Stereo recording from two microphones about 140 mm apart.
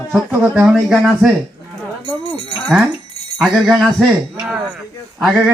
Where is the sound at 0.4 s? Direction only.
15° right (ahead or behind).